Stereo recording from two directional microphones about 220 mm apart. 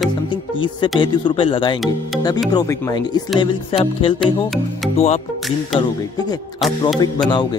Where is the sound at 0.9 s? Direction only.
20° left (ahead or behind).